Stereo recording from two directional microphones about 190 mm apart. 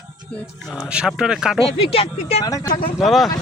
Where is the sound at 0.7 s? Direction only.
5° right (ahead or behind).